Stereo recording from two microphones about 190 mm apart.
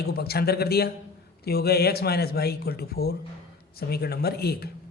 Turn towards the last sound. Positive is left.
turn(degrees=55)  # may be behind; listen again after turning